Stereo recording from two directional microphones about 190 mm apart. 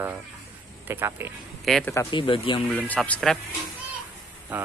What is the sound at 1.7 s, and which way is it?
Speech, 5° left (ahead or behind).